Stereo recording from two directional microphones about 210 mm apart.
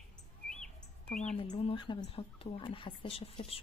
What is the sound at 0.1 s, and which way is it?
Squawk, 5° left (ahead or behind).